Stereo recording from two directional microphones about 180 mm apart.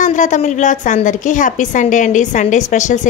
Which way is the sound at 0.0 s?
45° left (ahead or behind).